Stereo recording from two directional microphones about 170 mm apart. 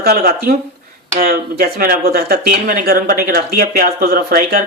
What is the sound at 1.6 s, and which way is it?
A man's voice, 60° right (ahead or behind).